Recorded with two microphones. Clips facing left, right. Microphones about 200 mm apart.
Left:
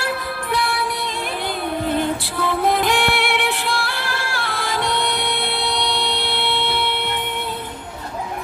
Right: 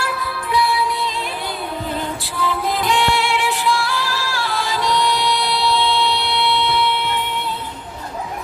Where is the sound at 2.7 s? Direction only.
55° left (ahead or behind).